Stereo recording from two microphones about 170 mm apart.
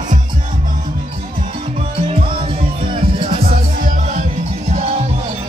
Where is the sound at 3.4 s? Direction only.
55° right (ahead or behind).